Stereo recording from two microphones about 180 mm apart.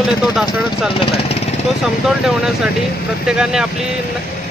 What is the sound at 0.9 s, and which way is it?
Speech, 30° left (ahead or behind).